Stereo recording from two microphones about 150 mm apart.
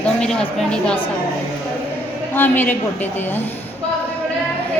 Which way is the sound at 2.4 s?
15° left (ahead or behind).